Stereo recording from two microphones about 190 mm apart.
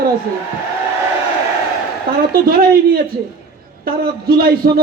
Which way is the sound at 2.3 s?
50° right (ahead or behind).